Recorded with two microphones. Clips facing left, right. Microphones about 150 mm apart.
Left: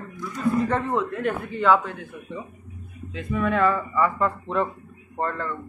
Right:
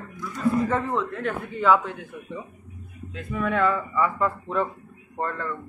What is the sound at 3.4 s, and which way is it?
Speech, centre (ahead or behind).